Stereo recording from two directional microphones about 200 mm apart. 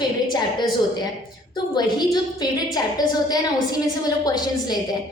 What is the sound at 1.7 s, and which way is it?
A woman's voice, 20° left (ahead or behind).